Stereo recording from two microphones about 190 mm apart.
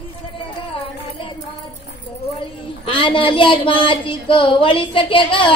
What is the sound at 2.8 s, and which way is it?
Speech, 25° left (ahead or behind).